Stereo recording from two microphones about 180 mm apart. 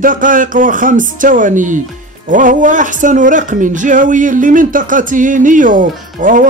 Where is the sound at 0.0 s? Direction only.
50° right (ahead or behind).